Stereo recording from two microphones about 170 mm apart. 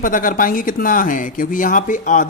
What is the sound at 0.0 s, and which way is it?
Speech, 55° left (ahead or behind).